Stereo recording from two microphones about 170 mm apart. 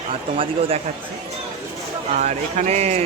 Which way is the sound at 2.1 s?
40° right (ahead or behind).